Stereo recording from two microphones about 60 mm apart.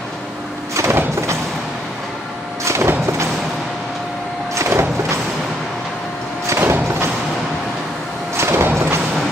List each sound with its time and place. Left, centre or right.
0.7 s sliding door: right
2.6 s vehicle: right
4.6 s music: right
6.6 s thump: right
8.4 s a sound: right